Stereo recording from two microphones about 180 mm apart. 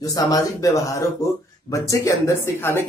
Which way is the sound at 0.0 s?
20° left (ahead or behind).